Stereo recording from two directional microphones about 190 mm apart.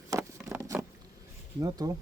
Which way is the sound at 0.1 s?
15° right (ahead or behind).